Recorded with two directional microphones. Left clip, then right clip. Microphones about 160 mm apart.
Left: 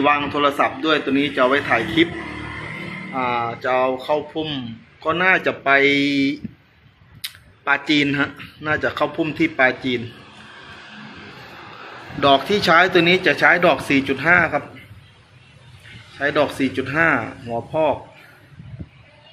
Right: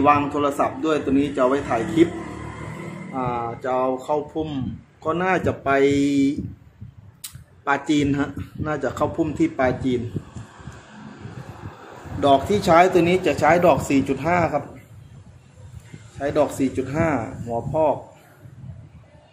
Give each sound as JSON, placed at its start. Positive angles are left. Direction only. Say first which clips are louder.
{"t": 0.0, "sound": "speech", "louder": "left 1 dB", "side_deg": -10}
{"t": 3.2, "sound": "a man's voice", "louder": "left 4 dB", "side_deg": -10}
{"t": 12.2, "sound": "speech", "louder": "left 2 dB", "side_deg": -20}
{"t": 16.2, "sound": "speech", "louder": "left 2 dB", "side_deg": -15}